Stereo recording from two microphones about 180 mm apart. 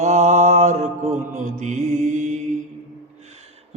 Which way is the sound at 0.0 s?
40° right (ahead or behind).